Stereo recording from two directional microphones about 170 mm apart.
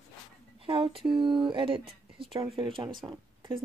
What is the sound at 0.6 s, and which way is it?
Speech, 30° right (ahead or behind).